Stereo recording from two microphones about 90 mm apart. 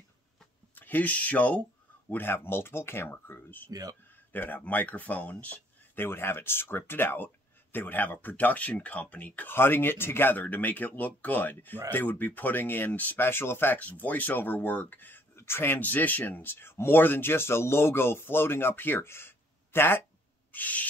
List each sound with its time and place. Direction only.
0.7 s speech: 20° left (ahead or behind)
20.5 s owl: 20° left (ahead or behind)